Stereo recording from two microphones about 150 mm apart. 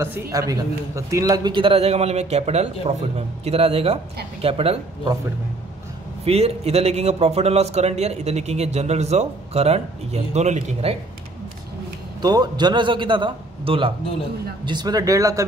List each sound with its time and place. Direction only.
0.0 s a man's voice: 20° right (ahead or behind); by 5.1 s 40° right (ahead or behind)
6.2 s a man's voice: 45° right (ahead or behind)
12.2 s a man's voice: 25° right (ahead or behind)